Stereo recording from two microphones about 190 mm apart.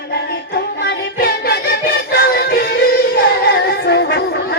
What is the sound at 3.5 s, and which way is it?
Child singing, 60° left (ahead or behind).